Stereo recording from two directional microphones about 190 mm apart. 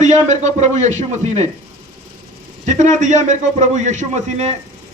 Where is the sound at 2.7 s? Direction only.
40° right (ahead or behind).